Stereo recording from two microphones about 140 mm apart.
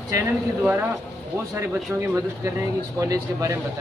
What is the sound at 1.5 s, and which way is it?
Speech, 20° right (ahead or behind).